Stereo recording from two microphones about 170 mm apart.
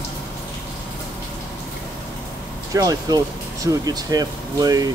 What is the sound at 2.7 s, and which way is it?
Speech, 20° right (ahead or behind).